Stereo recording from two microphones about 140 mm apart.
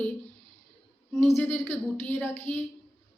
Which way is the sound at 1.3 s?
10° left (ahead or behind).